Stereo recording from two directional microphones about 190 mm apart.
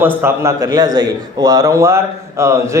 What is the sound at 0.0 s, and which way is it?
A man's voice, 10° right (ahead or behind).